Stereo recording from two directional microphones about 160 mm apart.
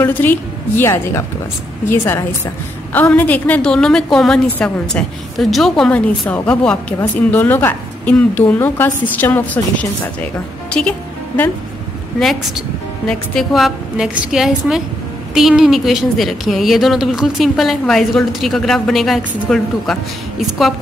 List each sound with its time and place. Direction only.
0.0 s a woman's voice: 10° left (ahead or behind)
13.0 s a woman's voice: 5° left (ahead or behind)